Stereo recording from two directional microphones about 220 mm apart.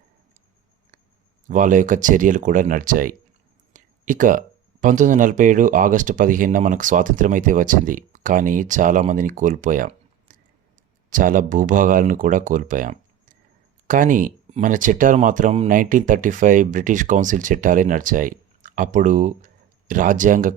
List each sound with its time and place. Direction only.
1.5 s speech: 35° right (ahead or behind)